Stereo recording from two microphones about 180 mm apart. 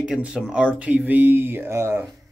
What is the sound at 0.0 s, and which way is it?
Speech, 5° right (ahead or behind).